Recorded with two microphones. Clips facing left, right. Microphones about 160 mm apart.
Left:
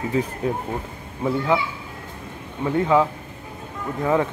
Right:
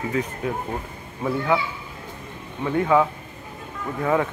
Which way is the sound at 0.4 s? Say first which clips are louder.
Left 3 dB; 30° left (ahead or behind).